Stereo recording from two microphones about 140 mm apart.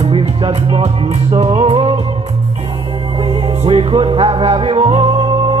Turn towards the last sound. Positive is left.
turn(degrees=-35)  # may be behind; listen again after turning